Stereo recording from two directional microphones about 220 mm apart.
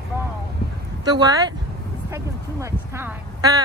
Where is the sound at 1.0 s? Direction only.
20° right (ahead or behind).